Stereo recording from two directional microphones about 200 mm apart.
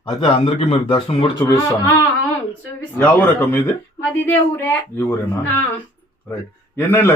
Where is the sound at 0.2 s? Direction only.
30° left (ahead or behind).